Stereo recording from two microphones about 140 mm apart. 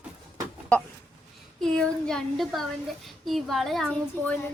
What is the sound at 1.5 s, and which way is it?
Speech, 5° left (ahead or behind).